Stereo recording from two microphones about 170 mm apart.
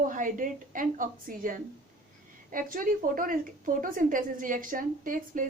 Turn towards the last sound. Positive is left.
turn(degrees=-50)  # may be behind; listen again after turning